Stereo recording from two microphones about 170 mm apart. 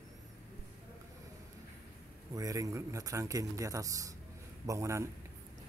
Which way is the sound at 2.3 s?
20° right (ahead or behind).